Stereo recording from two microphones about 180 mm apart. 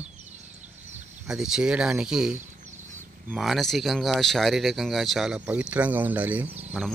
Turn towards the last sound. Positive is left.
turn(degrees=0)  # may be behind; listen again after turning